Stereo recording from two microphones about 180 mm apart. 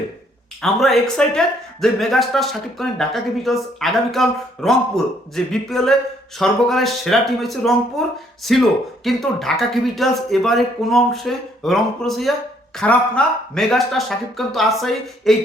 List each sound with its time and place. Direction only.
0.6 s speech: centre (ahead or behind)